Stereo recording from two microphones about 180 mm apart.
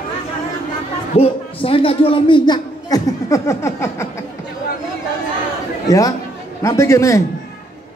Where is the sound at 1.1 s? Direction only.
30° left (ahead or behind); by 4.1 s 15° left (ahead or behind).